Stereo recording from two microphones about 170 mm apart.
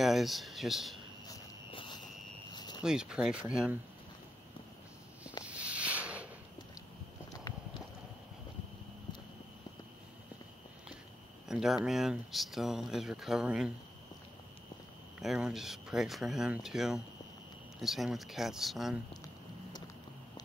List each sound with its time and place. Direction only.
0.0 s speech: centre (ahead or behind)
1.2 s cricket: 25° left (ahead or behind)
2.5 s a sound: 25° left (ahead or behind)
2.8 s speech: 5° right (ahead or behind)
5.4 s a sound: 5° right (ahead or behind)
11.4 s speech: 5° right (ahead or behind)
15.1 s speech: 5° right (ahead or behind)